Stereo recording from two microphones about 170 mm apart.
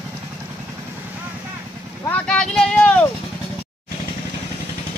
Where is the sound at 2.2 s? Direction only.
5° left (ahead or behind).